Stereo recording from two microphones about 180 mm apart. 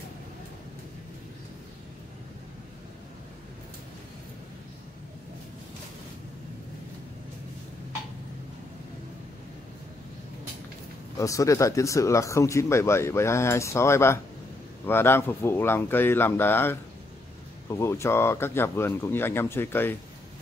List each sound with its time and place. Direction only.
11.1 s speech: 15° left (ahead or behind)